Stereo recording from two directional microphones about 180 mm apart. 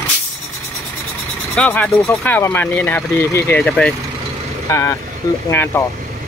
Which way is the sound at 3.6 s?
Centre (ahead or behind).